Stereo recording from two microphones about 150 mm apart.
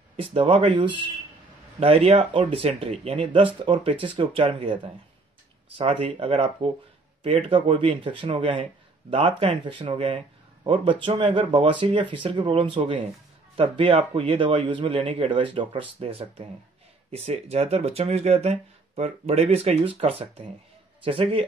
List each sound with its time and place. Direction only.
0.2 s speech: 35° right (ahead or behind)
5.8 s speech: 40° right (ahead or behind)